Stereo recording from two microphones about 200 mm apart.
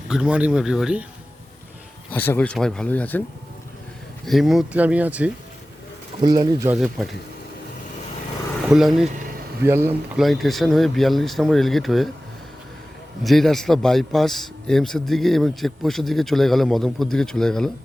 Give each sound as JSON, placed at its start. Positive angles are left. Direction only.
{"t": 0.1, "sound": "a man's voice", "side_deg": -5}
{"t": 2.0, "sound": "speech", "side_deg": 10}
{"t": 4.3, "sound": "speech", "side_deg": 0}
{"t": 6.1, "sound": "speech", "side_deg": -20}
{"t": 6.7, "sound": "a man's voice", "side_deg": 0}
{"t": 8.6, "sound": "speech", "side_deg": 0}
{"t": 10.2, "sound": "a man's voice", "side_deg": 0}
{"t": 13.2, "sound": "a man's voice", "side_deg": 0}